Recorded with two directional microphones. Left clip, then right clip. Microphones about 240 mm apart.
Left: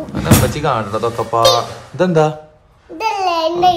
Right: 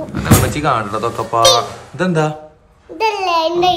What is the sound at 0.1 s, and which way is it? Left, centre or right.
A child's voice, centre.